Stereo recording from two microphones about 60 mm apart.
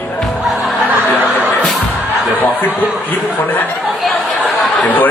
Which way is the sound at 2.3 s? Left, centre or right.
Left.